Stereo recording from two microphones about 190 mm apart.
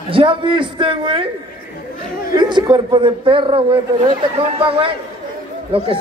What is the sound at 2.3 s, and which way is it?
A man's voice, 20° right (ahead or behind).